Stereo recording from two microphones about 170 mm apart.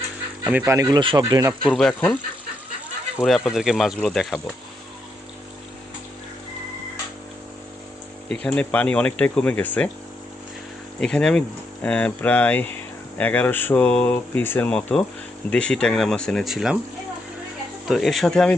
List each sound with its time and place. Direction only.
0.4 s speech: 10° right (ahead or behind)
1.6 s speech: 5° left (ahead or behind)
3.2 s speech: centre (ahead or behind)
8.3 s speech: 5° left (ahead or behind)
11.0 s speech: 5° left (ahead or behind)
17.8 s speech: centre (ahead or behind)